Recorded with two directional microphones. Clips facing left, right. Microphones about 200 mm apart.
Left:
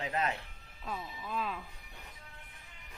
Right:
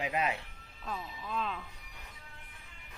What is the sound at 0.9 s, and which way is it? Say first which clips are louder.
Speech: even; 5° left (ahead or behind).